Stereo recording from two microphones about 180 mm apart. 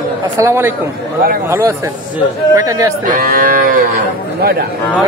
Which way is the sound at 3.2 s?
50° right (ahead or behind).